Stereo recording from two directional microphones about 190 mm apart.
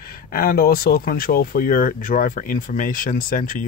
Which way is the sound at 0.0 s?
50° left (ahead or behind).